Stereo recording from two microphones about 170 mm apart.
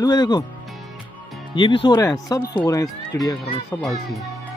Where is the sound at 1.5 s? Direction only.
30° left (ahead or behind).